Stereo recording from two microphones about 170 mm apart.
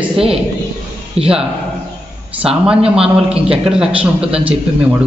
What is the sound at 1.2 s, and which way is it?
Speech, 35° right (ahead or behind).